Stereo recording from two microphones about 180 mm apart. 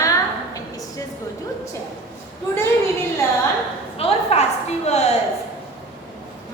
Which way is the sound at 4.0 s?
35° left (ahead or behind).